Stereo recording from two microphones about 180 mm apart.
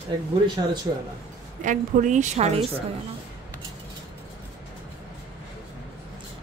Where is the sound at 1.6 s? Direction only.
45° right (ahead or behind).